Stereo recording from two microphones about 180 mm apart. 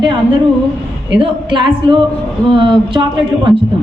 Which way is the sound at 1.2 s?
25° right (ahead or behind).